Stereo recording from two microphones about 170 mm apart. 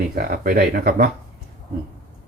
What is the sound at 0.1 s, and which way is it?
Speech, 60° right (ahead or behind).